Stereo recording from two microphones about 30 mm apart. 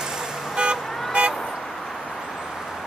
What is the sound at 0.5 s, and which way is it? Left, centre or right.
Vehicle, right.